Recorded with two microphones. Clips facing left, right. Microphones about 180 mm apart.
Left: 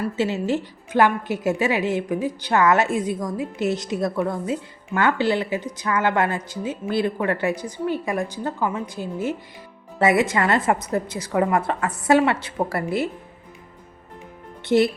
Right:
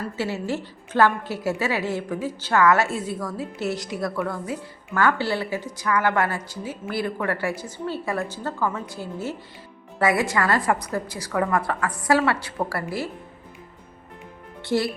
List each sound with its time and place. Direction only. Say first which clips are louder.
0.0 s a woman's voice: left 4 dB; 20° left (ahead or behind)
14.6 s speech: left 6 dB; 20° left (ahead or behind)